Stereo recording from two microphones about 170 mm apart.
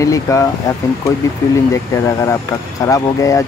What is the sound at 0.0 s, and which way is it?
Speech, 20° left (ahead or behind).